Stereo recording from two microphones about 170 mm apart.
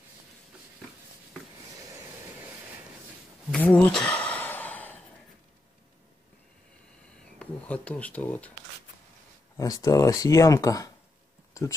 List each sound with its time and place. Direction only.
3.5 s gasp: 10° left (ahead or behind)
7.3 s speech: 10° left (ahead or behind)
9.6 s speech: 20° left (ahead or behind)